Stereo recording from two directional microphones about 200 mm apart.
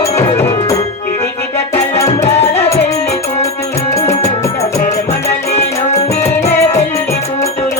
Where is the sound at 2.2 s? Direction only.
35° left (ahead or behind).